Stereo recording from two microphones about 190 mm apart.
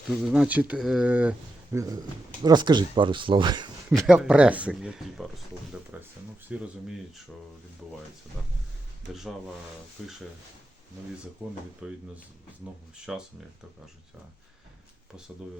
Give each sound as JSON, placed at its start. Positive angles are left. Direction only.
{"t": 0.1, "sound": "speech", "side_deg": 0}
{"t": 2.4, "sound": "speech", "side_deg": -20}
{"t": 4.0, "sound": "speech", "side_deg": -5}
{"t": 10.0, "sound": "speech", "side_deg": 0}
{"t": 11.8, "sound": "speech", "side_deg": -5}
{"t": 13.1, "sound": "speech", "side_deg": -5}